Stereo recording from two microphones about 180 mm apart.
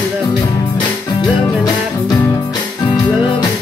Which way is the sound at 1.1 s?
20° left (ahead or behind).